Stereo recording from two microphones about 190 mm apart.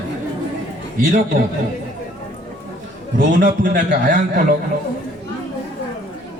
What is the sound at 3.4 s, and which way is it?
A man's voice, 45° right (ahead or behind).